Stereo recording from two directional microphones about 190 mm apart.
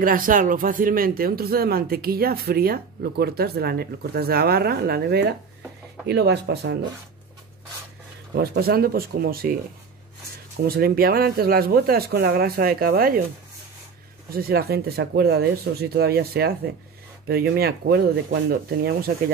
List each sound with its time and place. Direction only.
0.0 s speech: 45° right (ahead or behind); by 6.8 s 65° right (ahead or behind)
8.4 s speech: 50° right (ahead or behind)
10.6 s speech: 55° right (ahead or behind)
14.3 s speech: 55° right (ahead or behind)